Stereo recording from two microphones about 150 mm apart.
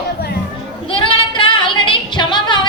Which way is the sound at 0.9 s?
35° left (ahead or behind).